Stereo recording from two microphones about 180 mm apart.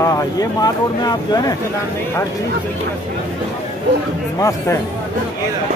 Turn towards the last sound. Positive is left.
turn(degrees=15)  # may be behind; listen again after turning